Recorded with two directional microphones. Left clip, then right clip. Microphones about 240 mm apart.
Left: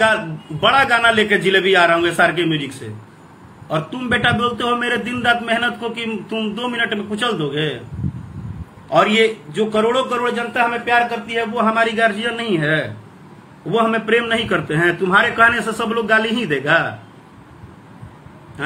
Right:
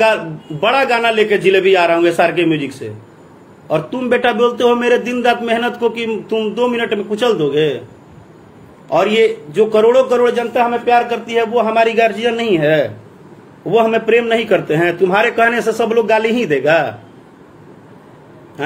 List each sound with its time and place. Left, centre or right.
0.6 s a man's voice: centre
1.0 s a man's voice: right
1.7 s a man's voice: centre
2.6 s a man's voice: right
3.7 s a man's voice: centre
9.0 s a man's voice: right
9.6 s a man's voice: centre